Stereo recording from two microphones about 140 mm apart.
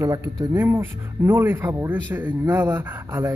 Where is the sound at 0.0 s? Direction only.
25° right (ahead or behind).